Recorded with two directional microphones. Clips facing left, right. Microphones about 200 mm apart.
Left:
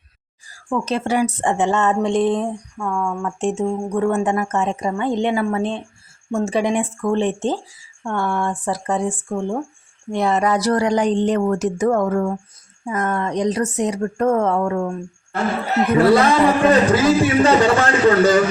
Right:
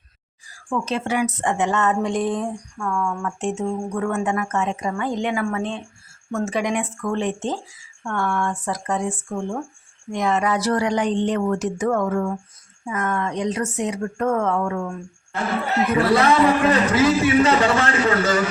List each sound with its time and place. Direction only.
0.5 s speech: 40° left (ahead or behind)
16.2 s speech: 30° left (ahead or behind)